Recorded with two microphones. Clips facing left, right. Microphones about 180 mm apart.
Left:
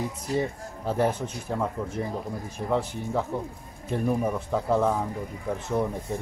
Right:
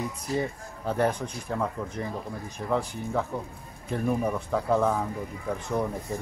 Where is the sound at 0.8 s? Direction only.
5° left (ahead or behind).